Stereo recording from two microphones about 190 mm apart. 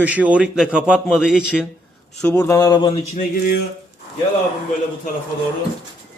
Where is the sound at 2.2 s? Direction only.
15° left (ahead or behind).